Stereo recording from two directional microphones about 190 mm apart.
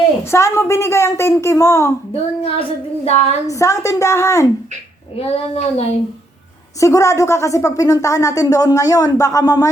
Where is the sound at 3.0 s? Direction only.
35° left (ahead or behind).